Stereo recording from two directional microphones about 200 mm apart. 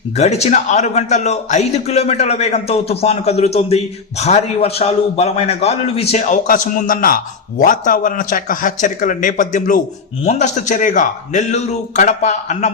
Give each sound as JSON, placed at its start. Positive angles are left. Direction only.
{"t": 0.2, "sound": "a man's voice", "side_deg": 35}